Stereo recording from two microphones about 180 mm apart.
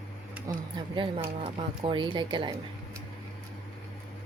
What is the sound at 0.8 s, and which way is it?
Speech, 25° right (ahead or behind).